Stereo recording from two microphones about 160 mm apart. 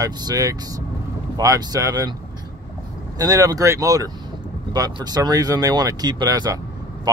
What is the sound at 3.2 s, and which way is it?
Speech, 20° right (ahead or behind).